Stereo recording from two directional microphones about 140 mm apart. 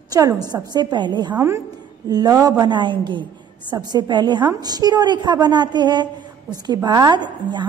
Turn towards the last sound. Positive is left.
turn(degrees=-35)  # may be behind; listen again after turning